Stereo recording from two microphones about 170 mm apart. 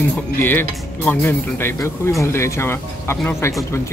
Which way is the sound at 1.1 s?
15° left (ahead or behind).